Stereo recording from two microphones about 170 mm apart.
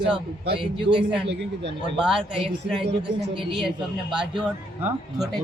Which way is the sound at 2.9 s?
90° right.